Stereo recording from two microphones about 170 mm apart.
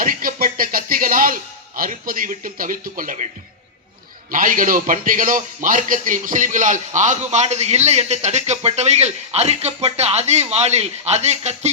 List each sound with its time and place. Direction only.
0.0 s music: 55° right (ahead or behind)
4.3 s a man's voice: 55° right (ahead or behind)